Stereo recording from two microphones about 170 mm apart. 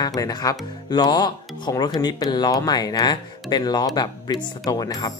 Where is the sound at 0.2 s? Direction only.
20° left (ahead or behind).